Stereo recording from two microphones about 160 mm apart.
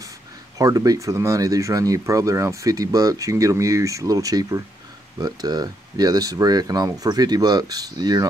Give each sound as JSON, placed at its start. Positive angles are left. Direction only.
{"t": 0.6, "sound": "speech", "side_deg": -20}